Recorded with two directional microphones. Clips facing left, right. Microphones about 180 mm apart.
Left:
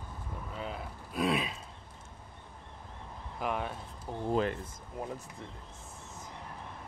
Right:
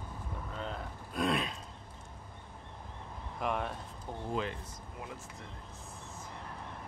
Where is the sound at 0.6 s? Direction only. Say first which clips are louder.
Left 1 dB; 5° left (ahead or behind).